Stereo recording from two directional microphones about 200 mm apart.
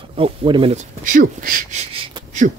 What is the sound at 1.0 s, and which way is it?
Speech, 45° right (ahead or behind).